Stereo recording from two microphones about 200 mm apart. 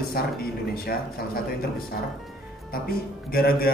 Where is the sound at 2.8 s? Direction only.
50° left (ahead or behind).